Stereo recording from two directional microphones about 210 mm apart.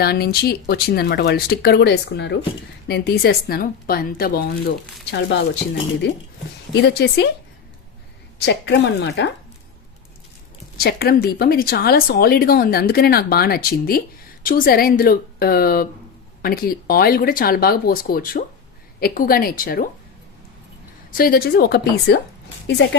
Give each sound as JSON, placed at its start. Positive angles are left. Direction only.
{"t": 0.0, "sound": "speech", "side_deg": 50}
{"t": 6.7, "sound": "speech", "side_deg": 50}
{"t": 8.4, "sound": "speech", "side_deg": 55}
{"t": 10.8, "sound": "speech", "side_deg": 45}
{"t": 21.2, "sound": "speech", "side_deg": 45}